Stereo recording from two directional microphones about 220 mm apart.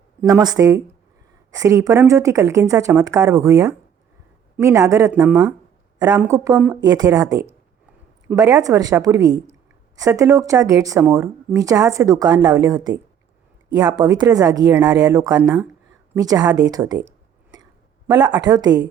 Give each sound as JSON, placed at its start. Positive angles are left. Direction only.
{"t": 0.2, "sound": "a woman's voice", "side_deg": -15}
{"t": 18.1, "sound": "a woman's voice", "side_deg": -20}